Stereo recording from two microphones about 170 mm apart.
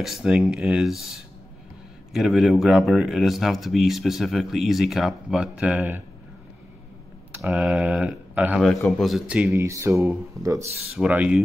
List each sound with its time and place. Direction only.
0.0 s speech: centre (ahead or behind)
7.3 s speech: 5° right (ahead or behind)
9.5 s speech: 15° right (ahead or behind)